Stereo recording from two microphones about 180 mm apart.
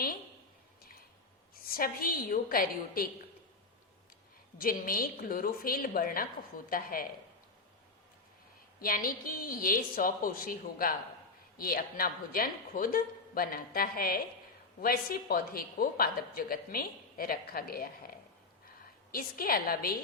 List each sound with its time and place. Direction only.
1.5 s speech: 55° left (ahead or behind)
4.5 s speech: 55° left (ahead or behind)
8.8 s speech: 50° left (ahead or behind)
19.1 s speech: 55° left (ahead or behind)